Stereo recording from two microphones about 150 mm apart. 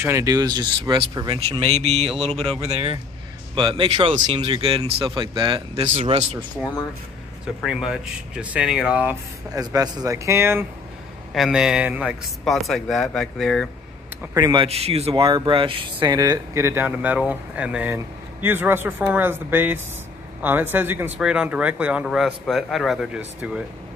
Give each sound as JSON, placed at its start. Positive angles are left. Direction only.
{"t": 0.0, "sound": "speech", "side_deg": -20}
{"t": 3.5, "sound": "speech", "side_deg": -30}
{"t": 5.9, "sound": "speech", "side_deg": -50}
{"t": 7.6, "sound": "speech", "side_deg": -5}
{"t": 9.5, "sound": "speech", "side_deg": -25}
{"t": 11.3, "sound": "a man's voice", "side_deg": 0}
{"t": 14.3, "sound": "speech", "side_deg": -30}
{"t": 15.1, "sound": "speech", "side_deg": -25}